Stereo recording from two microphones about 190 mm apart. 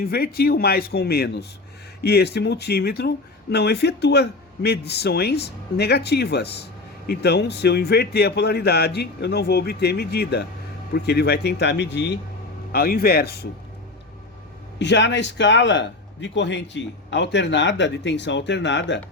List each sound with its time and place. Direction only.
0.0 s speech: 50° left (ahead or behind)
12.7 s speech: 50° left (ahead or behind)
14.8 s speech: 70° left (ahead or behind)